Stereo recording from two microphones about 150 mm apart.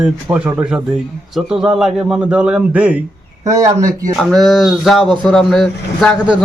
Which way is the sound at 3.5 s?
20° right (ahead or behind).